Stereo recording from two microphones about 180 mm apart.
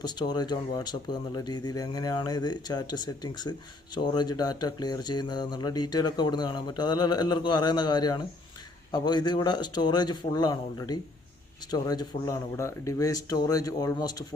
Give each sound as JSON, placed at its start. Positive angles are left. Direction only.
{"t": 0.0, "sound": "speech", "side_deg": 25}